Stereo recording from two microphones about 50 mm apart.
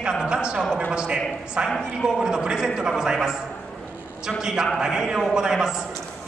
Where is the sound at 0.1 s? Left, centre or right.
Centre.